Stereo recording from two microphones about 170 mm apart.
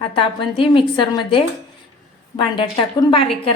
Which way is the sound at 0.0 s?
30° left (ahead or behind).